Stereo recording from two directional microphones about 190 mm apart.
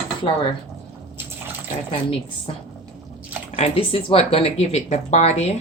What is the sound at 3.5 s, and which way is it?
Speech, 30° left (ahead or behind).